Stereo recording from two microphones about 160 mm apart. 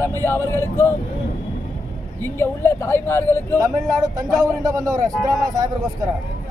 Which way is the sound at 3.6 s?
25° right (ahead or behind).